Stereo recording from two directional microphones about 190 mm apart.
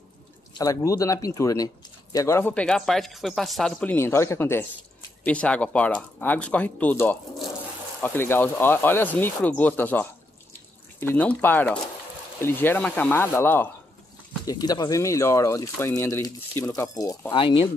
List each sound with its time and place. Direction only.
0.6 s speech: 20° left (ahead or behind)